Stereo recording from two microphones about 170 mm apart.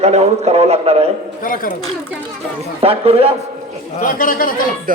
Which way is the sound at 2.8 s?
35° right (ahead or behind).